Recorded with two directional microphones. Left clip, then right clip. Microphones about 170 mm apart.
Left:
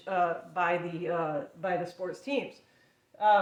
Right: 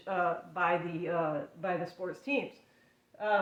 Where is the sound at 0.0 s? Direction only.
25° left (ahead or behind).